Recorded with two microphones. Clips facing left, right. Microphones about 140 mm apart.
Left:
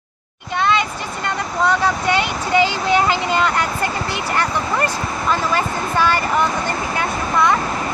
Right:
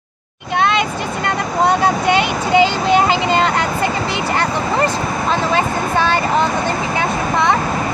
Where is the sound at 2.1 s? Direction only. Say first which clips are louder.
Right 4 dB; 20° right (ahead or behind).